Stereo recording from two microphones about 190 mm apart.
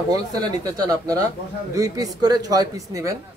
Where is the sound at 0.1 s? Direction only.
20° right (ahead or behind).